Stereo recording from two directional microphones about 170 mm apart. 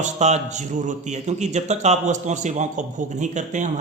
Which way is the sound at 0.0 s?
40° right (ahead or behind).